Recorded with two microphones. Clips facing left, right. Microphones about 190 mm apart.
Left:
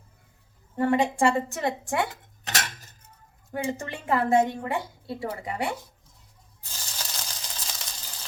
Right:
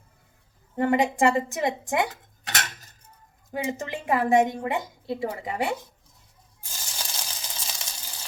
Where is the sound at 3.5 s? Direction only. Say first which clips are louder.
Right 1 dB; 15° right (ahead or behind).